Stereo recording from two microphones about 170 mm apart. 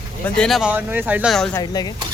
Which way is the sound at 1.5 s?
25° left (ahead or behind).